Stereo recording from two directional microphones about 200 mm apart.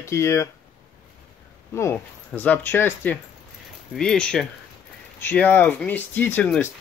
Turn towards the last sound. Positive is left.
turn(degrees=5)  # may be behind; listen again after turning